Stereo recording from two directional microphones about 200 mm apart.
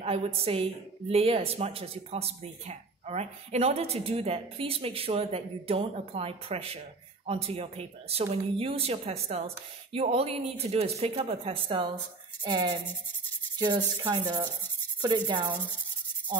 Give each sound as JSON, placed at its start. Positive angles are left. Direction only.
{"t": 0.0, "sound": "a woman's voice", "side_deg": -30}
{"t": 14.0, "sound": "a woman's voice", "side_deg": -20}